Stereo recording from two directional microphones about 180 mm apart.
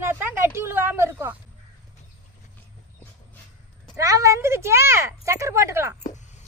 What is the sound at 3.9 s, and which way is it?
A woman's voice, 20° right (ahead or behind).